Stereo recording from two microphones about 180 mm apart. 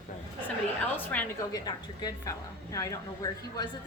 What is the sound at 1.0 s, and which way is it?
A woman's voice, 10° left (ahead or behind).